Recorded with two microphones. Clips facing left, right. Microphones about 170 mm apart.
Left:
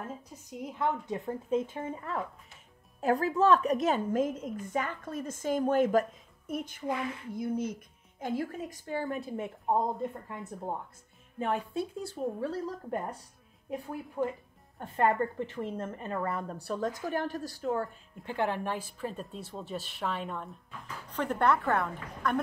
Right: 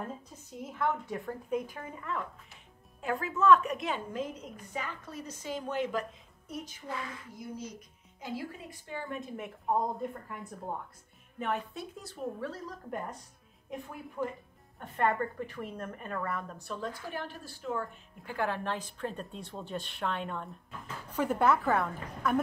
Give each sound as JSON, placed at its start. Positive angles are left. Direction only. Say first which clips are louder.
{"t": 0.5, "sound": "a woman's voice", "louder": "left 1 dB", "side_deg": 15}
{"t": 11.3, "sound": "a woman's voice", "louder": "left 4 dB", "side_deg": 30}
{"t": 18.2, "sound": "a woman's voice", "louder": "left 2 dB", "side_deg": 20}